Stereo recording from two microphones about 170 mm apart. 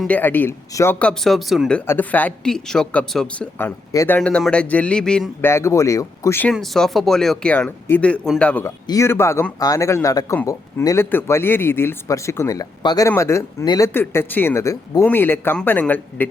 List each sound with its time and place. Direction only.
0.0 s a man's voice: 10° left (ahead or behind)
0.9 s a man's voice: 5° left (ahead or behind)
6.5 s a man's voice: centre (ahead or behind)